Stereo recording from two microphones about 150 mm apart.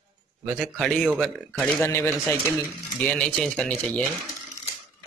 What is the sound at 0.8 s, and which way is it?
Speech, 5° left (ahead or behind).